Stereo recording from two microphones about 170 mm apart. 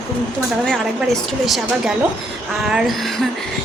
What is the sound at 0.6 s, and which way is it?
A woman's voice, 5° left (ahead or behind).